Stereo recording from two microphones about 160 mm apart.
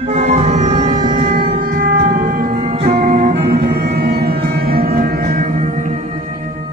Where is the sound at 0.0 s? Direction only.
45° right (ahead or behind).